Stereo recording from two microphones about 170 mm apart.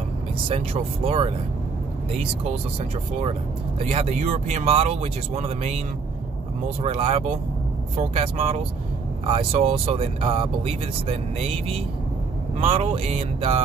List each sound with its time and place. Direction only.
0.5 s speech: 35° right (ahead or behind)
3.9 s speech: 40° right (ahead or behind)
6.8 s speech: 35° right (ahead or behind)
12.5 s speech: 35° right (ahead or behind)